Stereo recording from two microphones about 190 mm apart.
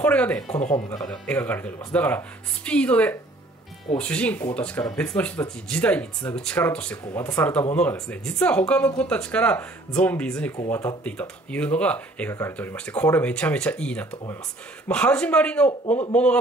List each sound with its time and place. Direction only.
0.0 s speech: 5° left (ahead or behind)
0.5 s speech: 40° left (ahead or behind)
0.7 s speech: 20° left (ahead or behind)
1.1 s a man's voice: 5° left (ahead or behind)